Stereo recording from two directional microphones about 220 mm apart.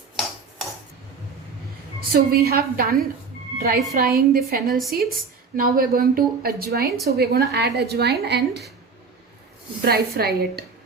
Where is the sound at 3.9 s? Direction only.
45° right (ahead or behind).